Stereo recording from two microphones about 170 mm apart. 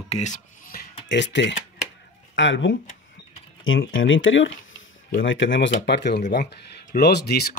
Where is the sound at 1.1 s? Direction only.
90° left.